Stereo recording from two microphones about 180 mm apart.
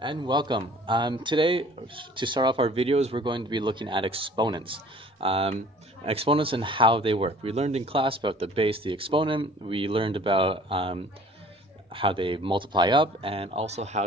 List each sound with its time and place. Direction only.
0.0 s speech: 25° right (ahead or behind)